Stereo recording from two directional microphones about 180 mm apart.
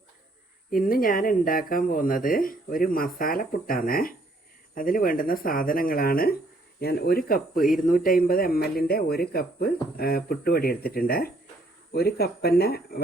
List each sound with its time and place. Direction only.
0.7 s a man's voice: 50° left (ahead or behind)